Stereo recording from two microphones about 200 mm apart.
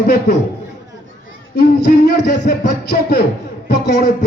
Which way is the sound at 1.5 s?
50° left (ahead or behind).